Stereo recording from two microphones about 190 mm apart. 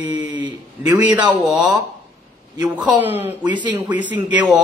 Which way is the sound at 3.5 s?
25° right (ahead or behind).